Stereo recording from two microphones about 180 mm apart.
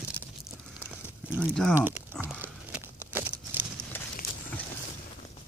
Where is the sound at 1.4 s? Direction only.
5° left (ahead or behind).